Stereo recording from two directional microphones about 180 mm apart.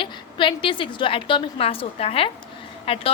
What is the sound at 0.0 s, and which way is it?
A woman's voice, 30° left (ahead or behind).